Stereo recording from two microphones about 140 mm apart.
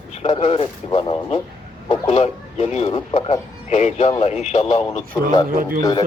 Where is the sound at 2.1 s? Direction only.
50° left (ahead or behind).